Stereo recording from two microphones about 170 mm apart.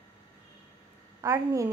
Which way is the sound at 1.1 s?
20° right (ahead or behind).